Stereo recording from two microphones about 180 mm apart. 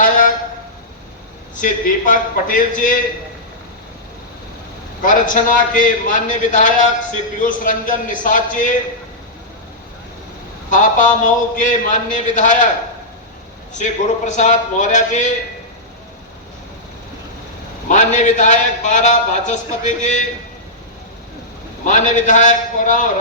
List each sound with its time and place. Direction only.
1.5 s a man's voice: 45° left (ahead or behind)
5.0 s a man's voice: 45° left (ahead or behind)
10.7 s a man's voice: 45° left (ahead or behind)
13.7 s a man's voice: 40° left (ahead or behind)
17.8 s a man's voice: 40° left (ahead or behind)
21.8 s a man's voice: 45° left (ahead or behind)